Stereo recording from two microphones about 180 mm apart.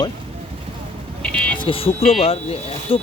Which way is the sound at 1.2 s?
5° left (ahead or behind).